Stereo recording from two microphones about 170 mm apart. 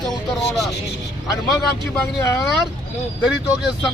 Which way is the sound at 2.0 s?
15° left (ahead or behind).